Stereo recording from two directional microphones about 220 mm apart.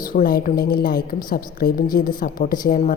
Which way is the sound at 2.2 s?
40° left (ahead or behind).